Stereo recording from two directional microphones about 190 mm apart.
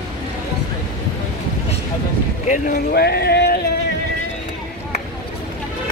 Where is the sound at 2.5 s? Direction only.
50° left (ahead or behind).